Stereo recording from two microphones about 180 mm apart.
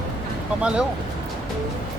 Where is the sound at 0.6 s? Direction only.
5° right (ahead or behind).